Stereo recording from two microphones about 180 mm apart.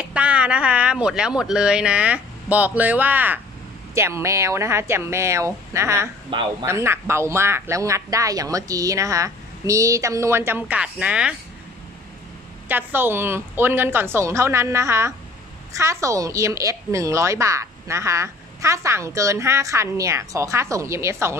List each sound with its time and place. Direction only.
0.1 s a woman's voice: 5° right (ahead or behind)
12.6 s a woman's voice: 10° right (ahead or behind)